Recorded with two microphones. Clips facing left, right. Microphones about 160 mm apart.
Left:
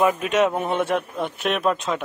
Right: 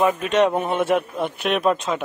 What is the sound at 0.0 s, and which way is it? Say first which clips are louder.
Speech: right 1 dB; 10° left (ahead or behind).